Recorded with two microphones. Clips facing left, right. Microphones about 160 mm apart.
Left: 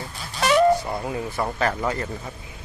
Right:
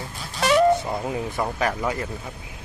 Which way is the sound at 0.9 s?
10° right (ahead or behind).